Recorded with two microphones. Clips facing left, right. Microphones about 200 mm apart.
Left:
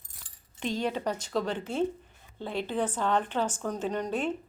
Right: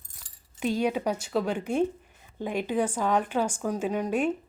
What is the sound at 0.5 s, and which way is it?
Speech, 10° right (ahead or behind).